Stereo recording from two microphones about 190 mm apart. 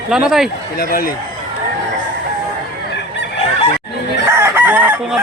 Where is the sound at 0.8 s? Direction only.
50° left (ahead or behind).